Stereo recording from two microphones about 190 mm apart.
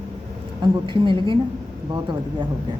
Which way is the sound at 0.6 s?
25° right (ahead or behind).